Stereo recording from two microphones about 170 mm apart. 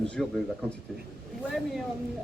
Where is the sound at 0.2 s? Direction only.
Centre (ahead or behind).